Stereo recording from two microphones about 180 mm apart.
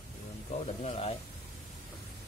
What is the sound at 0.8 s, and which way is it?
Speech, 35° left (ahead or behind).